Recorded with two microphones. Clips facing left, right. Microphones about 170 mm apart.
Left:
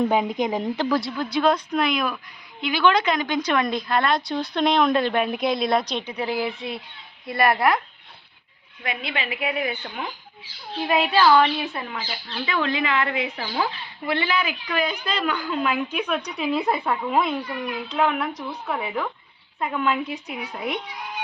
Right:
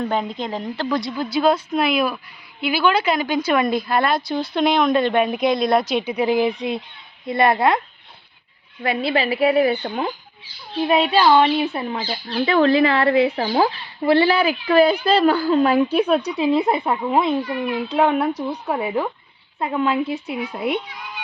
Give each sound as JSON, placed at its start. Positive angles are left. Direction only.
{"t": 0.0, "sound": "speech", "side_deg": 10}
{"t": 0.9, "sound": "a woman's voice", "side_deg": 5}
{"t": 8.8, "sound": "a woman's voice", "side_deg": -35}